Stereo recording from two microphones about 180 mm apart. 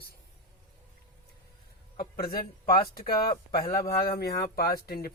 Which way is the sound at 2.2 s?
55° left (ahead or behind).